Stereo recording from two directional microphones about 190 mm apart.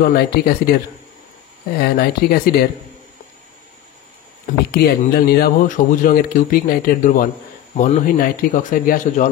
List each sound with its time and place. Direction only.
0.0 s speech: 55° left (ahead or behind)
1.8 s speech: 55° left (ahead or behind)
4.6 s speech: 55° left (ahead or behind)